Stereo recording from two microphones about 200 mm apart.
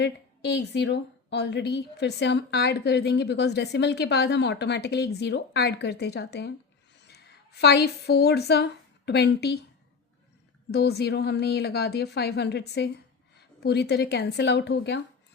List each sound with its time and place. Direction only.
0.0 s a woman's voice: 55° left (ahead or behind)
10.7 s a woman's voice: 55° left (ahead or behind)